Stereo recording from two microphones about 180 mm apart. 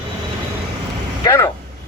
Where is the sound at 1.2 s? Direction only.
15° left (ahead or behind).